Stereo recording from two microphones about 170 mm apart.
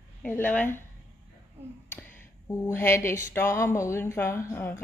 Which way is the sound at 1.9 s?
10° left (ahead or behind).